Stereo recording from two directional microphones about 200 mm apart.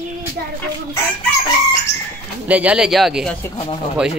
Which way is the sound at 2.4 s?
5° right (ahead or behind).